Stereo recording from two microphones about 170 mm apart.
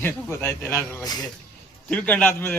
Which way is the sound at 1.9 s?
10° left (ahead or behind).